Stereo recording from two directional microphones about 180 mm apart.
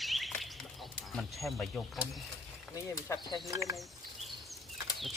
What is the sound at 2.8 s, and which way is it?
Speech, 20° left (ahead or behind).